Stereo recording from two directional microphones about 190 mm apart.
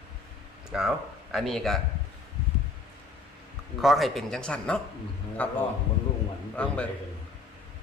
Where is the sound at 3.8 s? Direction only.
Centre (ahead or behind).